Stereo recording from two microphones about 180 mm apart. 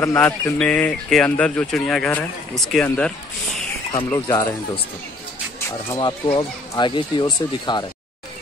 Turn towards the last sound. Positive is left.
turn(degrees=25)  # may be behind; listen again after turning